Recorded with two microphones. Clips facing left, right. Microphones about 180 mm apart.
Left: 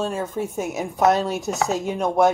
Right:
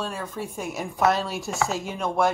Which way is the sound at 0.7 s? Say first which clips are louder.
Left 3 dB; 20° left (ahead or behind).